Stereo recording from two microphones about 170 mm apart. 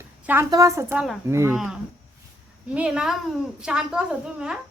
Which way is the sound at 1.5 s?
Centre (ahead or behind).